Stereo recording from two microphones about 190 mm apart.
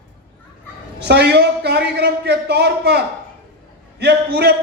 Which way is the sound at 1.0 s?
60° right (ahead or behind).